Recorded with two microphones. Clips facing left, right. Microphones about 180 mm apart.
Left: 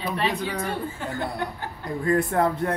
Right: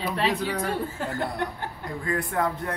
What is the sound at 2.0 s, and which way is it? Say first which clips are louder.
Speech: left 5 dB; 30° left (ahead or behind).